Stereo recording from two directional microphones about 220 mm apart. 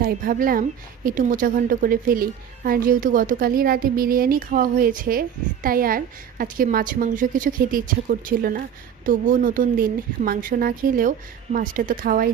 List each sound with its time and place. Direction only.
0.0 s a woman's voice: 40° right (ahead or behind)